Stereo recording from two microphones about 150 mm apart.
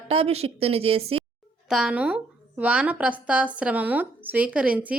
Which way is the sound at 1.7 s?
5° right (ahead or behind).